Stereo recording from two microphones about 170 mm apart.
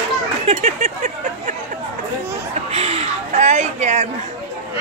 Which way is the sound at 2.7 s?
40° right (ahead or behind).